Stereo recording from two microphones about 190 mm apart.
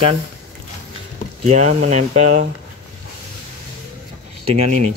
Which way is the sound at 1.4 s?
35° right (ahead or behind).